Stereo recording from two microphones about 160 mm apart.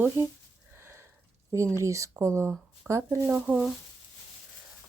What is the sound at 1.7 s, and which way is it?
Speech, 20° right (ahead or behind).